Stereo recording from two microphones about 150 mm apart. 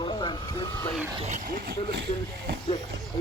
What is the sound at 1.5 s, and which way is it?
Speech, 85° right.